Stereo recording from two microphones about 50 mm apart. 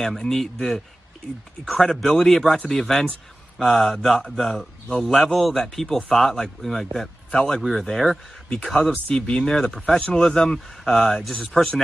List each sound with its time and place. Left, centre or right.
0.2 s speech: centre
7.3 s speech: centre
9.1 s speech: left
9.4 s speech: centre